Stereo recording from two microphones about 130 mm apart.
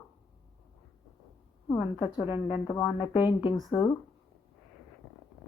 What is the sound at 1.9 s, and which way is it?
Speech, 35° left (ahead or behind).